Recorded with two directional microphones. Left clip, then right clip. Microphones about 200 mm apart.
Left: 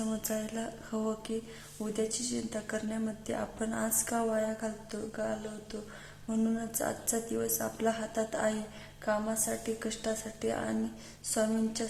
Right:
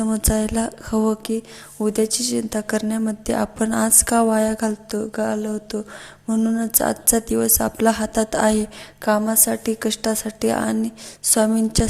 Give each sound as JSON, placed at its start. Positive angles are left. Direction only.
{"t": 0.0, "sound": "a woman's voice", "side_deg": -30}